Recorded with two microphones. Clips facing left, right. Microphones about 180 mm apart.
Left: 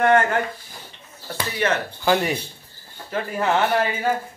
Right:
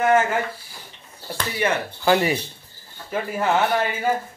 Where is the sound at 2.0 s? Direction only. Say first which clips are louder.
Right 2 dB; centre (ahead or behind).